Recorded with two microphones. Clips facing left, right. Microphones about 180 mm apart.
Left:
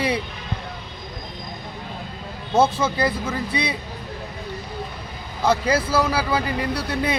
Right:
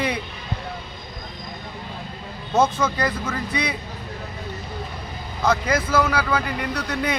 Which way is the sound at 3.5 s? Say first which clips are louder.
Even; 30° left (ahead or behind).